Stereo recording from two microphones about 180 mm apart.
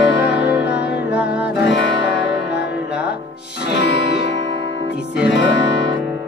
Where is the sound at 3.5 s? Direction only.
70° left (ahead or behind).